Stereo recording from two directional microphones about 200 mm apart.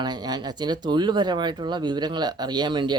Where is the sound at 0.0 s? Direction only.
20° right (ahead or behind).